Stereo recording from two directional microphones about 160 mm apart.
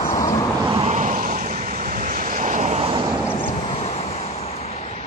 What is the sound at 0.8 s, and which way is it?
Vehicle, 45° right (ahead or behind).